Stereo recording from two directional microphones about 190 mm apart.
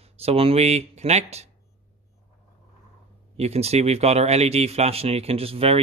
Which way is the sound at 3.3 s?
35° right (ahead or behind).